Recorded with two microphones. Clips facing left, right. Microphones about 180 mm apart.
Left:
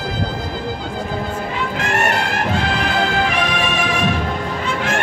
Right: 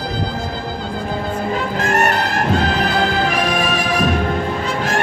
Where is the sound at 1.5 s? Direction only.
40° right (ahead or behind).